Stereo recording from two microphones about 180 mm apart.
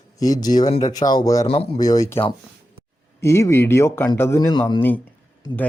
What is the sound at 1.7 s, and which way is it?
Speech, 20° left (ahead or behind).